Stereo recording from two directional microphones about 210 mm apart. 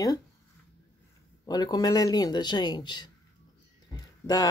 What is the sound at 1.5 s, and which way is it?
Speech, 20° left (ahead or behind).